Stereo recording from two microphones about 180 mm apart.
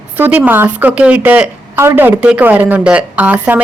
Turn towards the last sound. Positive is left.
turn(degrees=-10)  # may be behind; listen again after turning